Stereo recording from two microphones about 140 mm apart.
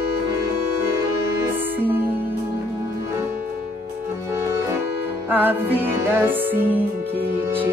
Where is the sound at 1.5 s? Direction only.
15° right (ahead or behind).